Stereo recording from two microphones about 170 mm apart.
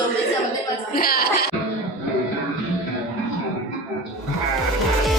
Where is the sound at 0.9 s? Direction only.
60° left (ahead or behind).